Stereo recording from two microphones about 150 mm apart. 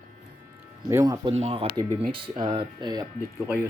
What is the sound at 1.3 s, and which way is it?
Speech, 45° right (ahead or behind).